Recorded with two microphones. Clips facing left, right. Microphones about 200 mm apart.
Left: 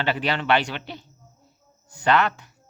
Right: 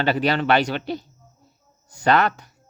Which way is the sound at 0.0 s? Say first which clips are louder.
Right 4 dB; 40° right (ahead or behind).